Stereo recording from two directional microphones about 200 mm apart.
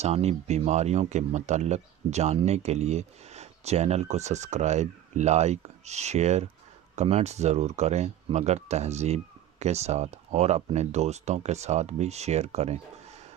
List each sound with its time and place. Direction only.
0.0 s speech: 30° right (ahead or behind)